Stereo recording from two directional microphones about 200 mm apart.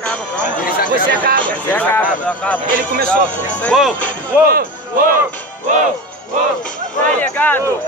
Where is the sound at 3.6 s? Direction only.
Centre (ahead or behind).